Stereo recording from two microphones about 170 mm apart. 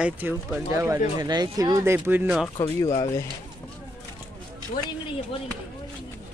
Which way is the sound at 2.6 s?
20° left (ahead or behind).